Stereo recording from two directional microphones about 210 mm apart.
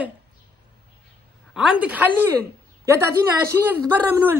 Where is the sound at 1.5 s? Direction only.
5° right (ahead or behind).